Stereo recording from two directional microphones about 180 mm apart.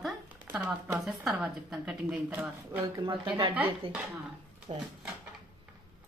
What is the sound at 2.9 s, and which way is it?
Speech, 25° right (ahead or behind).